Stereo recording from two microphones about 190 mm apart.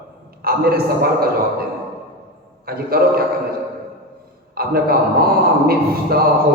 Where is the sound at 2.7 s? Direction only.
55° right (ahead or behind).